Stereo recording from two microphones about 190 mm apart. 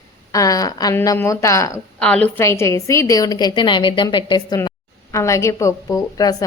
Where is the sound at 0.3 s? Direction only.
20° left (ahead or behind).